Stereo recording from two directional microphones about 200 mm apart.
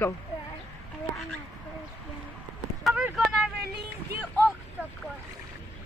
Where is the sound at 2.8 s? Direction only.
Centre (ahead or behind).